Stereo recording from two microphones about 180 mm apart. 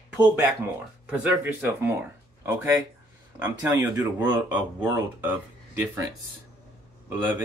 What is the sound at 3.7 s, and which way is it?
Speech, 20° right (ahead or behind).